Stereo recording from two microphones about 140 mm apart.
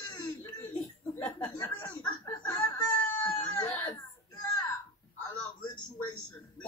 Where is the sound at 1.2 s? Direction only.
15° left (ahead or behind).